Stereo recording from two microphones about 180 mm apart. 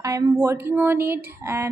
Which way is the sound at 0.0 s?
20° right (ahead or behind).